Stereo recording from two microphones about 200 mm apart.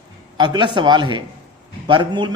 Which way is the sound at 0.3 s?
20° right (ahead or behind).